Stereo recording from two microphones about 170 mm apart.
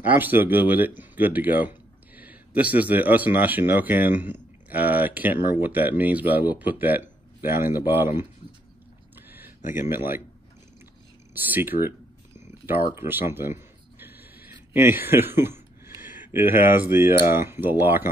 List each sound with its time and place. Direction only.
0.0 s speech: 10° right (ahead or behind)
9.1 s a sound: 10° right (ahead or behind)
9.7 s speech: 15° right (ahead or behind)
11.3 s speech: 10° right (ahead or behind)
12.4 s a sound: 15° right (ahead or behind)
16.0 s speech: 10° right (ahead or behind)